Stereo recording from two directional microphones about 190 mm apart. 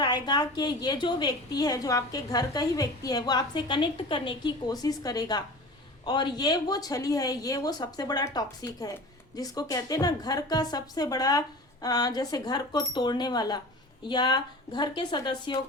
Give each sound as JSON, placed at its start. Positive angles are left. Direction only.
{"t": 0.0, "sound": "a woman's voice", "side_deg": 25}